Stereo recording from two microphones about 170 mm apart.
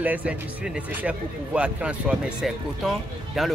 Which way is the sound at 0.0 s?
10° right (ahead or behind).